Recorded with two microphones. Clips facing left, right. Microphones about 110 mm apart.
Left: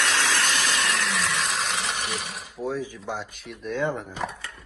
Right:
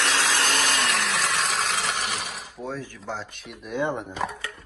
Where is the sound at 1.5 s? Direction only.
Centre (ahead or behind).